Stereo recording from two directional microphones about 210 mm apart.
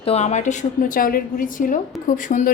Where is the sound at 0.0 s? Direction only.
30° left (ahead or behind).